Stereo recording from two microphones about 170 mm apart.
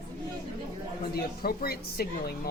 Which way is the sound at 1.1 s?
60° left (ahead or behind).